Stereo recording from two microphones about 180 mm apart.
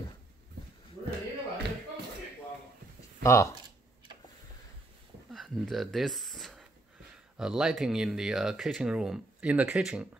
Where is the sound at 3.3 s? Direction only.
15° left (ahead or behind).